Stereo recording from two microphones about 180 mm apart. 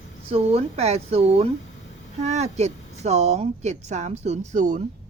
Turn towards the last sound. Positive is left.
turn(degrees=-40)  # may be behind; listen again after turning